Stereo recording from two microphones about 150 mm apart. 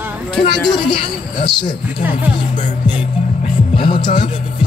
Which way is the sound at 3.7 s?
30° left (ahead or behind).